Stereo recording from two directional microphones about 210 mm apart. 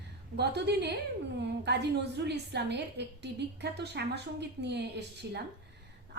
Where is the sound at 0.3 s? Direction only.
55° right (ahead or behind).